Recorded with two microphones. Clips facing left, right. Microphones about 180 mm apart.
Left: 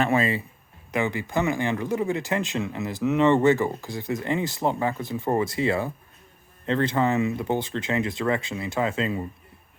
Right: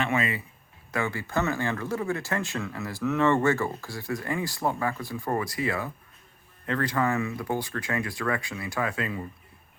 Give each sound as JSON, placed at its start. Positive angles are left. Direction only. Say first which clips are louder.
{"t": 0.0, "sound": "speech", "louder": "left 5 dB", "side_deg": 35}
{"t": 0.9, "sound": "speech", "louder": "left 4 dB", "side_deg": 20}